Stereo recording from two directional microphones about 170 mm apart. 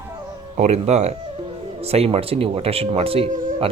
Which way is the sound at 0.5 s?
40° right (ahead or behind).